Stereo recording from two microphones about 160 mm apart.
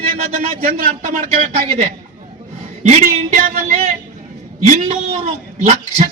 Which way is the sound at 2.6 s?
50° right (ahead or behind).